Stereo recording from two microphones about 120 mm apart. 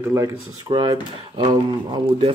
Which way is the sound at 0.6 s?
35° right (ahead or behind).